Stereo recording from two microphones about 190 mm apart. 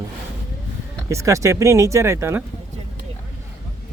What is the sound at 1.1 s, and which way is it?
Speech, 15° right (ahead or behind).